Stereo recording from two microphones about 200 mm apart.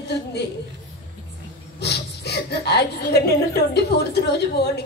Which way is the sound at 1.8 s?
55° left (ahead or behind).